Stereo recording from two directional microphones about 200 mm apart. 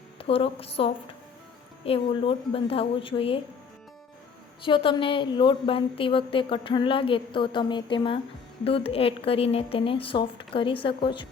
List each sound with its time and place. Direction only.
0.2 s a woman's voice: 30° left (ahead or behind)
4.6 s a woman's voice: 25° left (ahead or behind)